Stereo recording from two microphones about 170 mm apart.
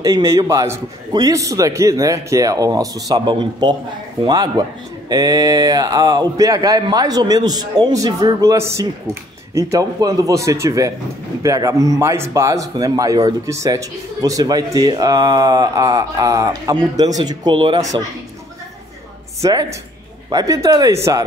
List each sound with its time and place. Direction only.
0.0 s speech: 20° right (ahead or behind)
20.2 s speech: 20° right (ahead or behind)